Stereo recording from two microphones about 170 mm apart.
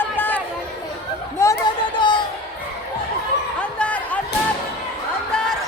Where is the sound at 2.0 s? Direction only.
30° left (ahead or behind).